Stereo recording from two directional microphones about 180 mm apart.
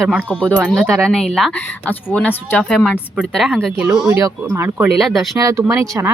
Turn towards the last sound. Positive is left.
turn(degrees=-15)  # may be behind; listen again after turning